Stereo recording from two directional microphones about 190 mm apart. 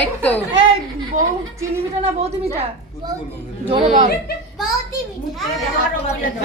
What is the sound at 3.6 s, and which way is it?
Speech, 30° right (ahead or behind).